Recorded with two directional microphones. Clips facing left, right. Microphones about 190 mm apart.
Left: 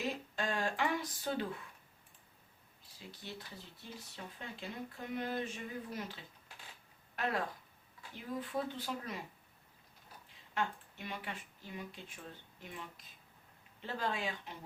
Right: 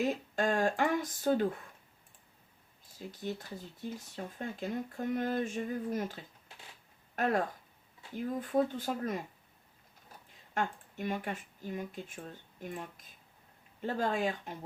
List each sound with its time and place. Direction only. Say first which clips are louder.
0.0 s speech: right 7 dB; 45° right (ahead or behind)
3.0 s speech: right 9 dB; 45° right (ahead or behind)
10.5 s speech: right 3 dB; 45° right (ahead or behind)